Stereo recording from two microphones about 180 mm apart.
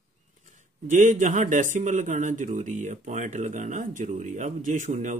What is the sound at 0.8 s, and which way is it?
A man's voice, 45° right (ahead or behind).